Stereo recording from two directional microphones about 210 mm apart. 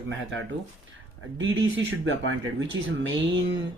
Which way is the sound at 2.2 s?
60° right (ahead or behind).